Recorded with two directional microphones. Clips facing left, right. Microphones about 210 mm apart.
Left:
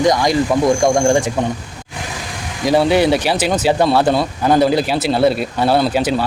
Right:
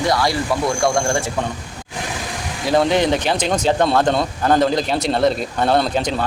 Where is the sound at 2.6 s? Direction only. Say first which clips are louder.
Left 3 dB; 10° left (ahead or behind).